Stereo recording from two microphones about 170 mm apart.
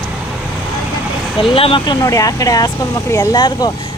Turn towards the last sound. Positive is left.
turn(degrees=25)  # may be behind; listen again after turning